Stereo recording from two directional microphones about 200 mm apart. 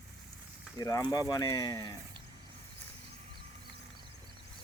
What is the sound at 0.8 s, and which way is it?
Speech, 15° left (ahead or behind).